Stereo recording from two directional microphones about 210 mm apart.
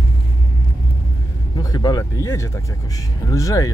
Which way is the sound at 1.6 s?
20° left (ahead or behind).